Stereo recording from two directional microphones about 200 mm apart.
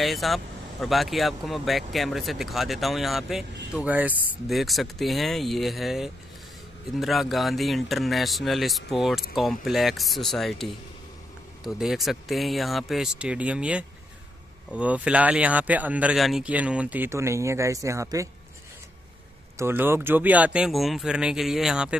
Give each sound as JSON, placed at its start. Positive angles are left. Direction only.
{"t": 0.0, "sound": "speech", "side_deg": 0}
{"t": 19.6, "sound": "speech", "side_deg": -10}